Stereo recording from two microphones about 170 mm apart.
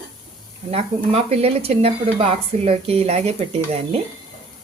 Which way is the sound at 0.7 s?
35° right (ahead or behind).